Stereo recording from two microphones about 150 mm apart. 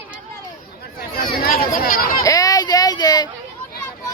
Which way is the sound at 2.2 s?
25° left (ahead or behind).